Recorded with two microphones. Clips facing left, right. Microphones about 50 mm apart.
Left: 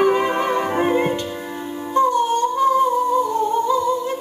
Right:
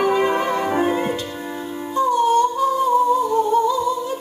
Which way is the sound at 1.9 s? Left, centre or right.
Left.